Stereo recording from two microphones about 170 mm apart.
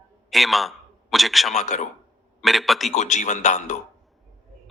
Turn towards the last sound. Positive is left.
turn(degrees=45)  # may be behind; listen again after turning